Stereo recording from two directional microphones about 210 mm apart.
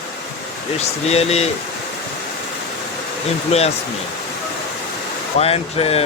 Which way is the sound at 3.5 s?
30° left (ahead or behind).